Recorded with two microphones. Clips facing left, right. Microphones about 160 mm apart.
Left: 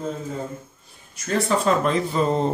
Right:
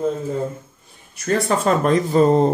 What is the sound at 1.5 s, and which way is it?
Speech, 50° right (ahead or behind).